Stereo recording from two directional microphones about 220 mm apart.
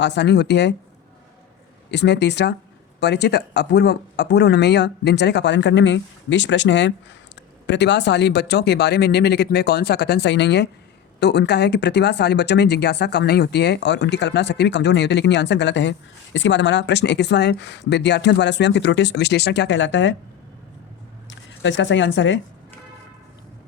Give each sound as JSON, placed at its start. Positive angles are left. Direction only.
{"t": 0.0, "sound": "speech", "side_deg": 50}
{"t": 1.9, "sound": "speech", "side_deg": 50}
{"t": 21.2, "sound": "speech", "side_deg": 55}